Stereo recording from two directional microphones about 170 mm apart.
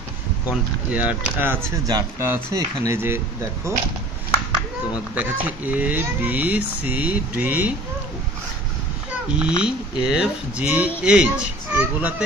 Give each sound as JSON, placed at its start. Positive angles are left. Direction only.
{"t": 0.5, "sound": "speech", "side_deg": -10}
{"t": 9.6, "sound": "speech", "side_deg": -5}